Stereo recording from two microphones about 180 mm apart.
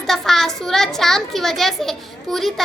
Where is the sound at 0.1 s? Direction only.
Centre (ahead or behind).